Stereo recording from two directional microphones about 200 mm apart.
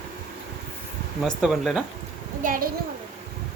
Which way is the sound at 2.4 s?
45° right (ahead or behind).